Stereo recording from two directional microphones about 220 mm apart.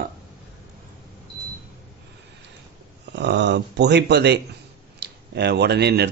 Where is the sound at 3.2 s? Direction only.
50° right (ahead or behind).